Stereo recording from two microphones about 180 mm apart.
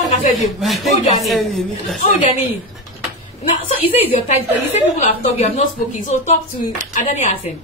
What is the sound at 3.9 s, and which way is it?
A woman's voice, 35° left (ahead or behind).